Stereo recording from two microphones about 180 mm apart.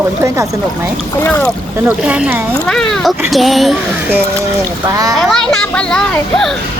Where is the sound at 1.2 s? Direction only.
10° left (ahead or behind).